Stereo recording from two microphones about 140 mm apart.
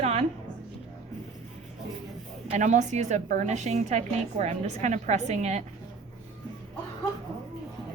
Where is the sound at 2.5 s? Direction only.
60° right (ahead or behind).